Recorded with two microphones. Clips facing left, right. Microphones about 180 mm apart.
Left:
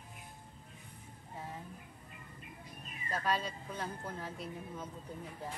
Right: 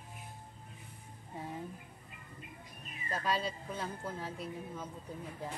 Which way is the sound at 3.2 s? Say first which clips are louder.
Right 1 dB; 10° right (ahead or behind).